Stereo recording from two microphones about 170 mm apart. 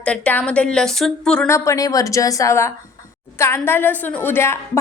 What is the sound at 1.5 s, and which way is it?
A woman's voice, 20° left (ahead or behind).